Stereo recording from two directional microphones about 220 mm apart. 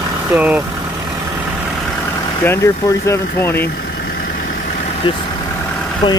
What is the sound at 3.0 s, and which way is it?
Speech, 10° left (ahead or behind).